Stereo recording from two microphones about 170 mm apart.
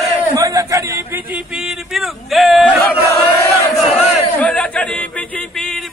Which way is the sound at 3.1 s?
20° left (ahead or behind).